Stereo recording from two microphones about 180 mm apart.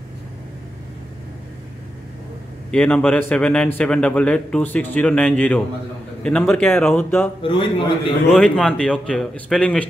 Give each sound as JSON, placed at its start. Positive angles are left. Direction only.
{"t": 2.7, "sound": "a man's voice", "side_deg": 5}
{"t": 7.4, "sound": "a man's voice", "side_deg": 30}
{"t": 8.3, "sound": "speech", "side_deg": 0}